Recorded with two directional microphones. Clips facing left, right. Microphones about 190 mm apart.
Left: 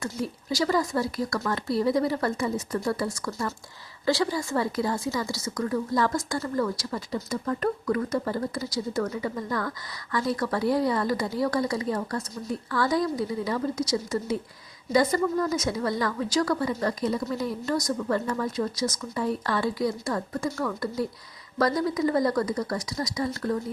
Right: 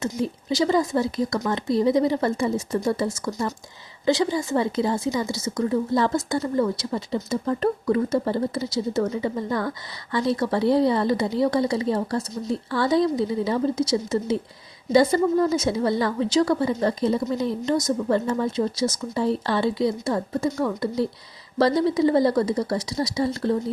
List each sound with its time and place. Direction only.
0.0 s a woman's voice: 20° right (ahead or behind)